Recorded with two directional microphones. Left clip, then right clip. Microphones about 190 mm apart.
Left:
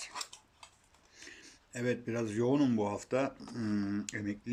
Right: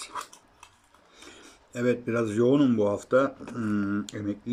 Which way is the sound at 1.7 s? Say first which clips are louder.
Right 9 dB; 5° right (ahead or behind).